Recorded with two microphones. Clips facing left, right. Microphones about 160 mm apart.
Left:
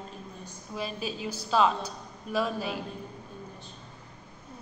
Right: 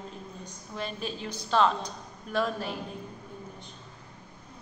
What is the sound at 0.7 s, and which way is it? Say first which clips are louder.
A woman's voice: left 1 dB; 5° left (ahead or behind).